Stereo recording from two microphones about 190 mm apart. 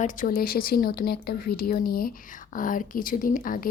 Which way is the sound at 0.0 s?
45° left (ahead or behind).